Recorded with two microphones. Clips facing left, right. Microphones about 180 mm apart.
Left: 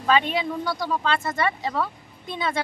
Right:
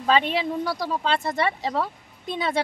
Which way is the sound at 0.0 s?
30° right (ahead or behind).